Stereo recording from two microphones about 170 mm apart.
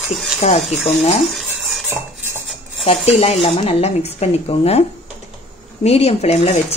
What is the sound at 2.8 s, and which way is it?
Speech, 35° left (ahead or behind).